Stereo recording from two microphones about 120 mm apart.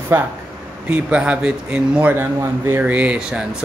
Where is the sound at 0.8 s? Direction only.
10° right (ahead or behind).